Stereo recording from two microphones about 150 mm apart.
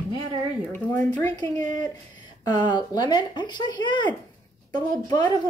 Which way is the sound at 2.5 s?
30° left (ahead or behind).